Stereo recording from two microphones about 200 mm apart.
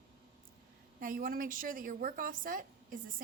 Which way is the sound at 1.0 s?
45° right (ahead or behind).